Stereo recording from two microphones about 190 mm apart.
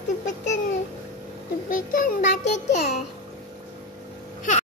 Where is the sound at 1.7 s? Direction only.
45° left (ahead or behind).